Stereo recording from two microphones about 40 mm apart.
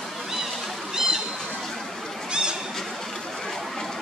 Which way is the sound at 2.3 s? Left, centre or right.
Right.